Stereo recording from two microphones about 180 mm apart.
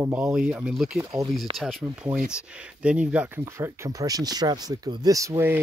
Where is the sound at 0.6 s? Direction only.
Centre (ahead or behind).